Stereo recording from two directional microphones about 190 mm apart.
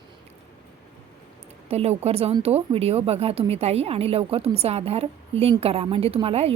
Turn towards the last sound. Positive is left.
turn(degrees=-30)  # may be behind; listen again after turning